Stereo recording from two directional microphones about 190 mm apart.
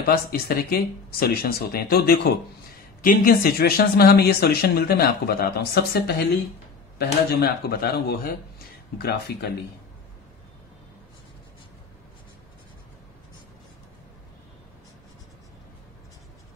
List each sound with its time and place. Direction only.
0.0 s speech: 55° left (ahead or behind)